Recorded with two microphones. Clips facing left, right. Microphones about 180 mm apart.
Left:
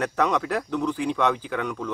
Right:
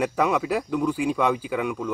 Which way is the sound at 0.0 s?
10° right (ahead or behind).